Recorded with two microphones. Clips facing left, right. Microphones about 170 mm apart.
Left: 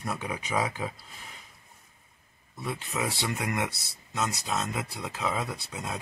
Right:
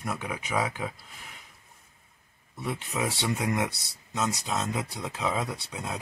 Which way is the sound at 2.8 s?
Centre (ahead or behind).